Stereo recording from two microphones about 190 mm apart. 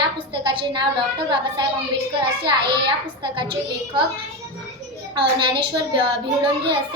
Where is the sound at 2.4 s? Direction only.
25° right (ahead or behind).